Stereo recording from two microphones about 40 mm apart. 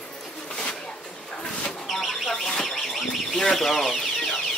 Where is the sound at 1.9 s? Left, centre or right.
Centre.